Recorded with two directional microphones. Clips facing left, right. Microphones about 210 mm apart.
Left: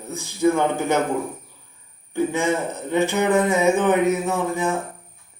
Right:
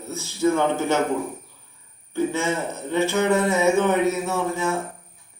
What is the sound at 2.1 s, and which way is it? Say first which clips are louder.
A man's voice: left 2 dB; 15° left (ahead or behind).